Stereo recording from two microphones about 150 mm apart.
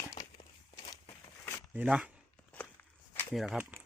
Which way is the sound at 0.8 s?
35° left (ahead or behind).